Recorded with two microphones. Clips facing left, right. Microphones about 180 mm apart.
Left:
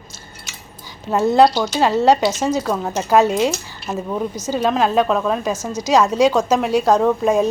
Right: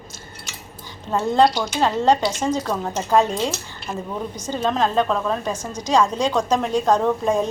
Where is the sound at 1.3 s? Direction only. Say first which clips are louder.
Left 3 dB; 10° left (ahead or behind).